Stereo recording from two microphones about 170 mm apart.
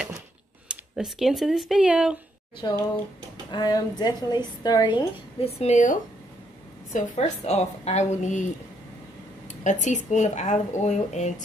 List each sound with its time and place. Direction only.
0.7 s speech: centre (ahead or behind)
2.6 s a woman's voice: 25° left (ahead or behind); by 8.5 s 45° left (ahead or behind)
9.5 s speech: 45° left (ahead or behind)